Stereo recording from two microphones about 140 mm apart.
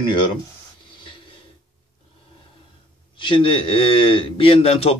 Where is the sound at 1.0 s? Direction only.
40° left (ahead or behind).